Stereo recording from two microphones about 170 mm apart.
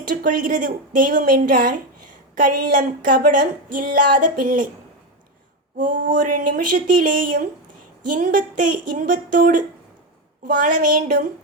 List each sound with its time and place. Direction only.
0.2 s speech: 50° right (ahead or behind)
5.8 s speech: 50° right (ahead or behind)